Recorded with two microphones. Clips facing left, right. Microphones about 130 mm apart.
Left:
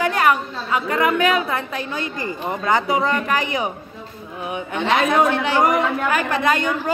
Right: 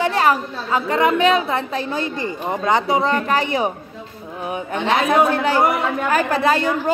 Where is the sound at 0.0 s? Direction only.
30° right (ahead or behind).